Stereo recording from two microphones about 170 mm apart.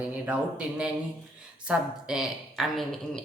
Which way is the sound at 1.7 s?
5° right (ahead or behind).